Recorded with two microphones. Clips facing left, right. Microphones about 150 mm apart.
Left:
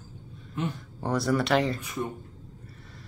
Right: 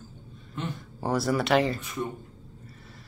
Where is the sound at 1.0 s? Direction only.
5° right (ahead or behind).